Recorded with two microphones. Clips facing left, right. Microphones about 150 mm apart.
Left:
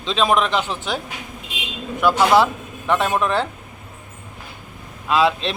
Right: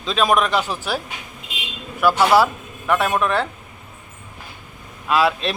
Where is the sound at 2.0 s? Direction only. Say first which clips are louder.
Even; 5° right (ahead or behind).